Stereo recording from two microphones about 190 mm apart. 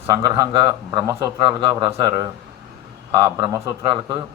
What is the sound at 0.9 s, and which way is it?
Speech, 20° right (ahead or behind).